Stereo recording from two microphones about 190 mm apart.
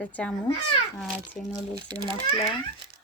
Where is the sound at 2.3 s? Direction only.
25° left (ahead or behind).